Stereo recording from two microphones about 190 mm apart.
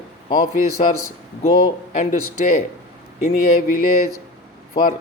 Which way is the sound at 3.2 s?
45° left (ahead or behind).